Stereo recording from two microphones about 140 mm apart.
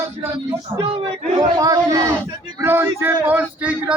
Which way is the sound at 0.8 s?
35° right (ahead or behind).